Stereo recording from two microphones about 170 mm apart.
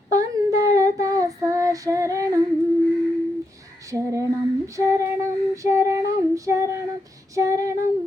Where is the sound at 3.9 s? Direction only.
20° right (ahead or behind).